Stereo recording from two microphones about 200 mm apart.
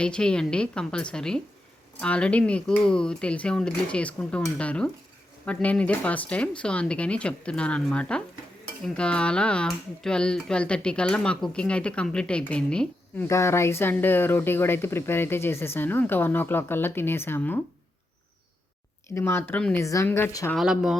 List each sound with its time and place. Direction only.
0.0 s speech: 5° left (ahead or behind)
19.1 s speech: 10° left (ahead or behind)
20.6 s speech: centre (ahead or behind)